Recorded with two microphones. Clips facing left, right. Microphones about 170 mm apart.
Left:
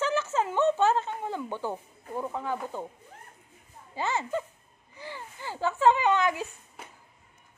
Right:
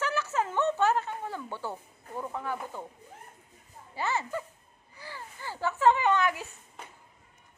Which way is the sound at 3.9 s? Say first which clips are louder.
Left 2 dB; 20° left (ahead or behind).